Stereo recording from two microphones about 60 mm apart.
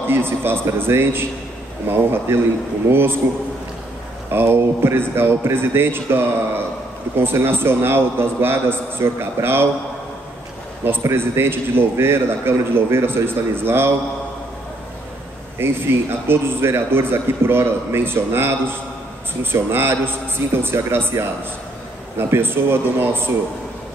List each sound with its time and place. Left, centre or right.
0.0 s a man's voice: right
4.3 s a man's voice: right
10.8 s a man's voice: right
15.6 s a man's voice: right